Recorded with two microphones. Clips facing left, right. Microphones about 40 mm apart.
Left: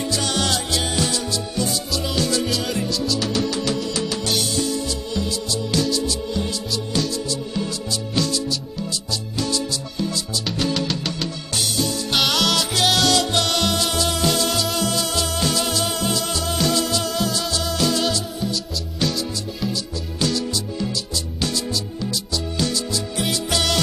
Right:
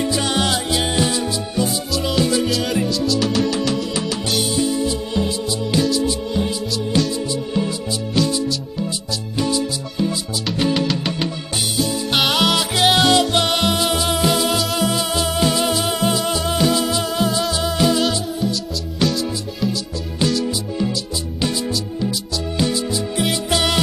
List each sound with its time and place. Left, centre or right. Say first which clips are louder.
0.0 s music: right 3 dB; centre
2.4 s music: right 4 dB; centre
4.4 s music: right 4 dB; centre
8.2 s music: right 4 dB; centre
9.4 s music: right 5 dB; centre
14.9 s music: right 3 dB; centre
18.4 s music: right 3 dB; centre
20.4 s music: right 4 dB; centre